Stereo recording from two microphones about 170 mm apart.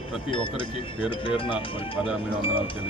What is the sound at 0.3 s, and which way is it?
Speech, 30° left (ahead or behind).